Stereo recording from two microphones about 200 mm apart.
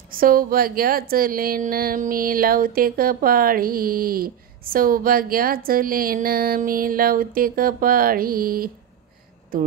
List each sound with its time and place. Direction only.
0.1 s speech: 45° right (ahead or behind)